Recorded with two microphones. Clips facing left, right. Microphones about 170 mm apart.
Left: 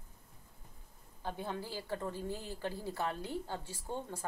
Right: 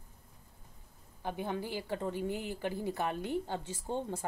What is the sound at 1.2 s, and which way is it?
A woman's voice, 15° right (ahead or behind).